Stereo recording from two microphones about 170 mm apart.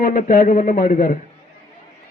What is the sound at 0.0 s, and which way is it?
Speech, 55° left (ahead or behind).